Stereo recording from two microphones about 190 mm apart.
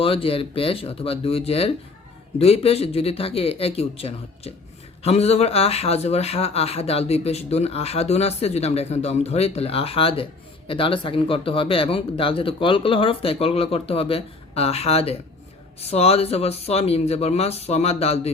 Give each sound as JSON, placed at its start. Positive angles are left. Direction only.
{"t": 0.0, "sound": "speech", "side_deg": 30}